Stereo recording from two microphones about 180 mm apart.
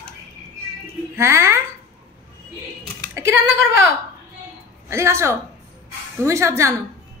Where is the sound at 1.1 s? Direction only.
15° right (ahead or behind).